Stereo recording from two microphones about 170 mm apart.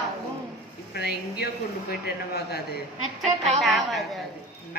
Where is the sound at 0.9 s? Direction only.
70° left (ahead or behind).